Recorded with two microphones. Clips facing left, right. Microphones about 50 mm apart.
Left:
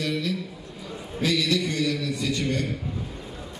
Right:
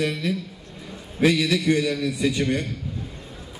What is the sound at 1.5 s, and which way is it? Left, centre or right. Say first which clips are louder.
A man's voice: right 4 dB; right.